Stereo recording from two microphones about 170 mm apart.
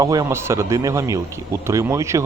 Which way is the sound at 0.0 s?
20° right (ahead or behind).